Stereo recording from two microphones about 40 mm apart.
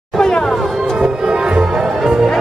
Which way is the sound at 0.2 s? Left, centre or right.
Left.